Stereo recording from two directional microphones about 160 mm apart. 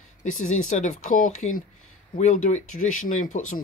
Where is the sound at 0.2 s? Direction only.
50° left (ahead or behind).